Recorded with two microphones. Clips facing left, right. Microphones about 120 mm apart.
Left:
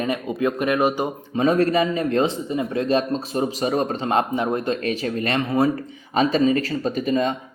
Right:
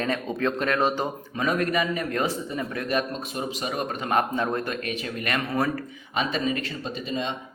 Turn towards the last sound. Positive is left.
turn(degrees=45)  # may be behind; listen again after turning